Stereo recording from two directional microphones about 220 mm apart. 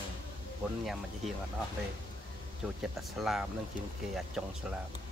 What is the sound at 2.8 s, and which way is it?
Speech, centre (ahead or behind).